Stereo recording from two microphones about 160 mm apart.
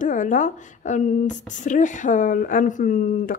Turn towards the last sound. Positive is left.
turn(degrees=60)  # may be behind; listen again after turning